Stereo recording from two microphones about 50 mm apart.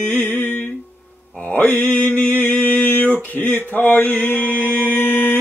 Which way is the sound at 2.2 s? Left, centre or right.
Left.